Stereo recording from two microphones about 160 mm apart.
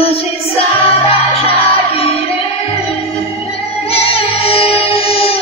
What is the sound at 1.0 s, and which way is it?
Music, 40° left (ahead or behind).